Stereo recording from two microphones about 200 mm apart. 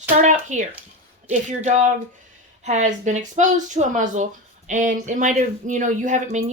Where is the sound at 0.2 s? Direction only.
35° right (ahead or behind).